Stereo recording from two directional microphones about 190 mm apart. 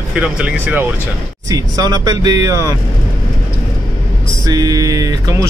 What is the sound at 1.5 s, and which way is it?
Speech, 20° right (ahead or behind).